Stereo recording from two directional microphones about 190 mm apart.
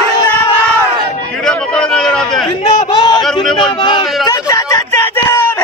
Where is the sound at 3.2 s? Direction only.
5° left (ahead or behind).